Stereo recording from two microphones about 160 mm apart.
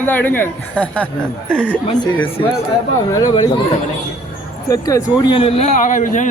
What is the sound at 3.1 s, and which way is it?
Speech, 25° left (ahead or behind).